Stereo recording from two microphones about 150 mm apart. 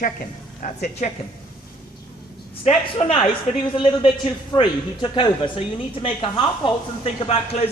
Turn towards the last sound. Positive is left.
turn(degrees=40)  # may be behind; listen again after turning